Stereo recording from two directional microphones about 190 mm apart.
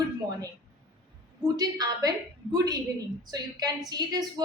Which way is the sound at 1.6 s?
20° right (ahead or behind).